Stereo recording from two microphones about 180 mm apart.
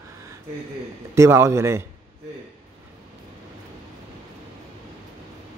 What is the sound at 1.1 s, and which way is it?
Speech, 15° right (ahead or behind).